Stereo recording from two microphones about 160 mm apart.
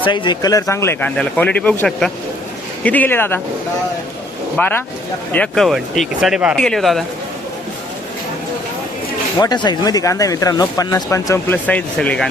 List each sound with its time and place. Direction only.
0.0 s speech: 30° left (ahead or behind); by 3.4 s 15° left (ahead or behind)
4.5 s speech: 10° left (ahead or behind)
9.4 s speech: 25° left (ahead or behind); by 12.3 s 5° left (ahead or behind)